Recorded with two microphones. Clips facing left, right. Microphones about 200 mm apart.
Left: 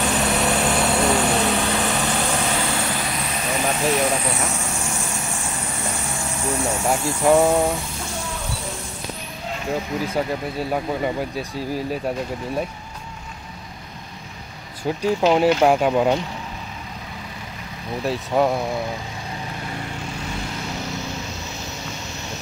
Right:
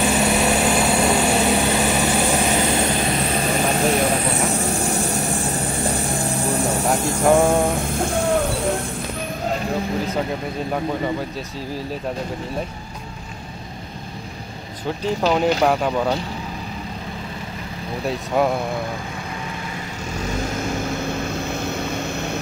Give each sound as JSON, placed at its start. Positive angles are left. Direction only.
{"t": 0.0, "sound": "vehicle", "side_deg": -10}
{"t": 7.2, "sound": "speech", "side_deg": 0}
{"t": 7.7, "sound": "vehicle", "side_deg": -50}
{"t": 11.3, "sound": "speech", "side_deg": 10}
{"t": 15.2, "sound": "speech", "side_deg": 5}
{"t": 18.0, "sound": "speech", "side_deg": 0}
{"t": 20.3, "sound": "vehicle", "side_deg": -50}